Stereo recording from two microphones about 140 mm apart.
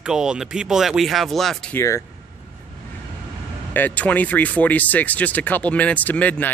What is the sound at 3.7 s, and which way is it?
Speech, 10° left (ahead or behind).